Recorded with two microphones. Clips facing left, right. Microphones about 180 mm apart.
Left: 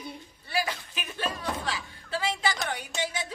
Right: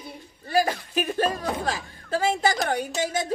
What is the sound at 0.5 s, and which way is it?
Speech, 45° right (ahead or behind).